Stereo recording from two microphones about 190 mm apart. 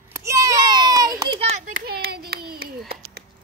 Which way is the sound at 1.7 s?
55° right (ahead or behind).